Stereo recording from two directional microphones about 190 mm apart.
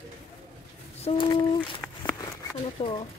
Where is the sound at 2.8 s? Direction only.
30° left (ahead or behind).